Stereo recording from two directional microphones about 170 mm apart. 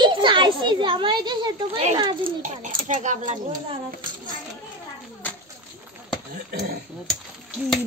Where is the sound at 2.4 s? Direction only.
45° right (ahead or behind).